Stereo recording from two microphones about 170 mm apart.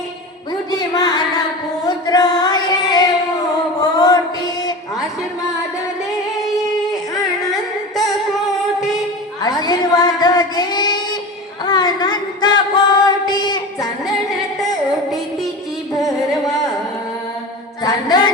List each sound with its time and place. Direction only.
0.7 s a sound: 25° left (ahead or behind)
1.8 s female singing: 25° left (ahead or behind)
3.8 s mantra: 25° left (ahead or behind)
9.4 s a sound: 25° left (ahead or behind)
11.6 s singing: 25° left (ahead or behind)
17.8 s female singing: 25° left (ahead or behind)